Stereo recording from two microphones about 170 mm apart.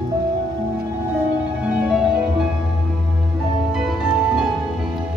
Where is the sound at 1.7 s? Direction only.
5° right (ahead or behind).